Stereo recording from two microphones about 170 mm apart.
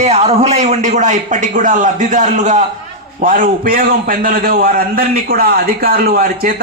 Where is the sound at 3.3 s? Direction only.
55° right (ahead or behind).